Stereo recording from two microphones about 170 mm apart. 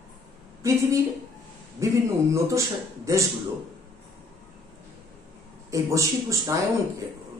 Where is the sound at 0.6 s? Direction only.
15° right (ahead or behind).